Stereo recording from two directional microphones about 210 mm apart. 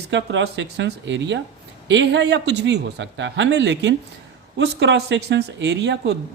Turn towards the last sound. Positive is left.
turn(degrees=-55)  # may be behind; listen again after turning